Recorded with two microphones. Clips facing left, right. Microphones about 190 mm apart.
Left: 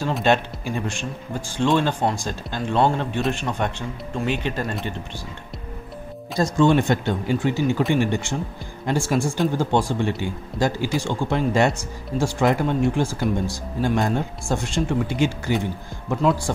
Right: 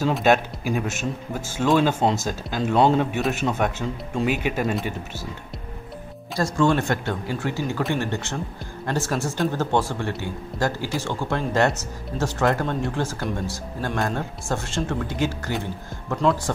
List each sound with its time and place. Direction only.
0.0 s speech: 5° right (ahead or behind)
2.0 s speech: 20° right (ahead or behind)
2.2 s speech: 5° right (ahead or behind)
6.3 s speech: 20° left (ahead or behind)
16.2 s speech: 5° left (ahead or behind)